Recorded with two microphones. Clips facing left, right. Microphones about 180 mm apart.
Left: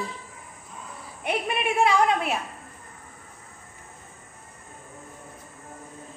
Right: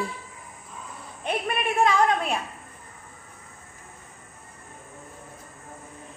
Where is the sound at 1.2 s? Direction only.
10° left (ahead or behind).